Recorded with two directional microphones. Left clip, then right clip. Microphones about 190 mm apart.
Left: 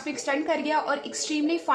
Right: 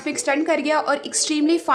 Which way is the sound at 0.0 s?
45° right (ahead or behind).